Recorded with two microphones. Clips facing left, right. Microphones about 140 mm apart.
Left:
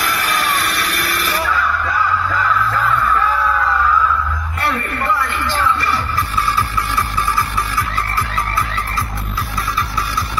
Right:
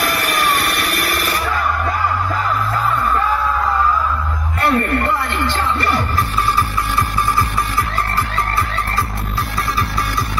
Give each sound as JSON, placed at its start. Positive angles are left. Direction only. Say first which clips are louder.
{"t": 0.6, "sound": "a sound", "louder": "right 1 dB", "side_deg": -55}
{"t": 1.9, "sound": "music", "louder": "even", "side_deg": -40}
{"t": 5.3, "sound": "music", "louder": "left 1 dB", "side_deg": -60}